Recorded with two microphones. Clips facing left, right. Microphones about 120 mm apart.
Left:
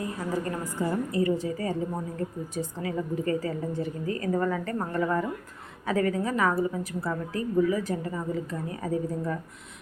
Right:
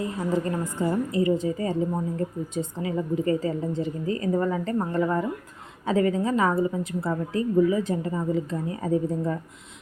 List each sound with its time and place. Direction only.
0.0 s a woman's voice: 25° right (ahead or behind)